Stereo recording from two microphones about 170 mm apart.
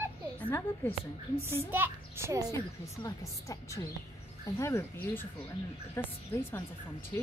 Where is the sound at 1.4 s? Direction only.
15° right (ahead or behind).